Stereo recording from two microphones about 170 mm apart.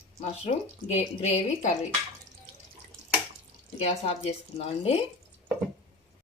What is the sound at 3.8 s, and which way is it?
Speech, 35° left (ahead or behind).